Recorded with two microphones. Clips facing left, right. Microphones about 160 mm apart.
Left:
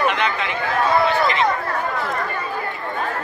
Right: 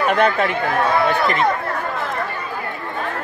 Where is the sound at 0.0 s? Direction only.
50° right (ahead or behind).